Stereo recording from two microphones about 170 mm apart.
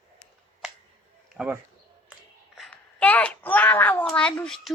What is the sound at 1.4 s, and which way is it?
Speech, 10° right (ahead or behind).